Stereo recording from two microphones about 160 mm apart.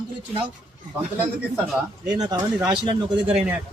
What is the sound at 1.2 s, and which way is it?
Speech, 5° right (ahead or behind).